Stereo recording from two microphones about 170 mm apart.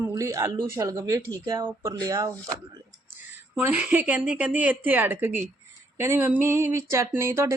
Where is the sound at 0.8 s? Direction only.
20° right (ahead or behind).